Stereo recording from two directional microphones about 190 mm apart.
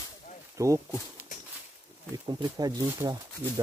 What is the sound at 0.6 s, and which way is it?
Speech, 15° right (ahead or behind).